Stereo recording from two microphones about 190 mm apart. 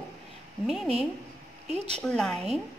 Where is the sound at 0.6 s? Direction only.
Centre (ahead or behind).